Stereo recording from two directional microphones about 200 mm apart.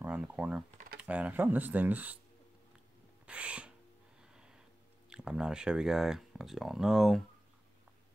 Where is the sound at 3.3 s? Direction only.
5° right (ahead or behind).